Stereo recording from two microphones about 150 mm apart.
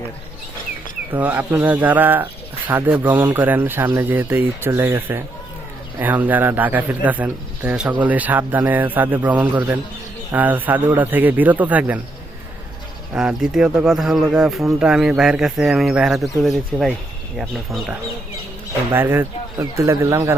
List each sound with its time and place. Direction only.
1.1 s speech: 10° right (ahead or behind)
13.1 s speech: 5° right (ahead or behind)
18.9 s speech: 15° right (ahead or behind)